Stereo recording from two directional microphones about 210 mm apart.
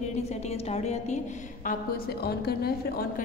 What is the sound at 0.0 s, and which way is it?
A woman's voice, 30° left (ahead or behind).